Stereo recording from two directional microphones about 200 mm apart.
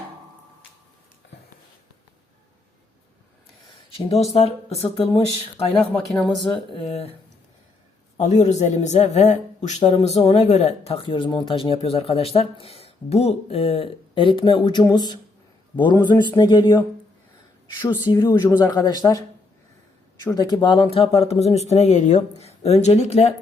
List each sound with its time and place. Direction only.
3.8 s speech: 30° left (ahead or behind)
5.8 s speech: 5° left (ahead or behind)
8.2 s a man's voice: 35° left (ahead or behind)
18.1 s speech: 20° left (ahead or behind)
20.3 s speech: 20° left (ahead or behind)